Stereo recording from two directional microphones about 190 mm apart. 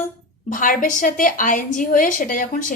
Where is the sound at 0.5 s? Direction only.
45° left (ahead or behind).